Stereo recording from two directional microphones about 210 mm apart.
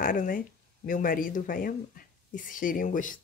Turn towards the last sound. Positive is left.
turn(degrees=40)  # may be behind; listen again after turning